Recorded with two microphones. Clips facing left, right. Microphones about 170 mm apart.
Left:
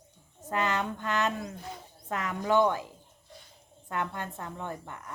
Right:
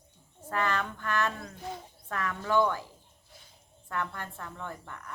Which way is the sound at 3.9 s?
20° left (ahead or behind).